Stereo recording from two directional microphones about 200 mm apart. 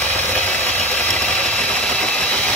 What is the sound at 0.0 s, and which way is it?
Engine, 5° left (ahead or behind).